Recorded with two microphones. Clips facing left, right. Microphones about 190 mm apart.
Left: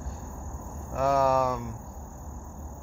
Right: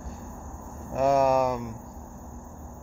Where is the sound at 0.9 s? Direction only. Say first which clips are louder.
Right 2 dB; 20° right (ahead or behind).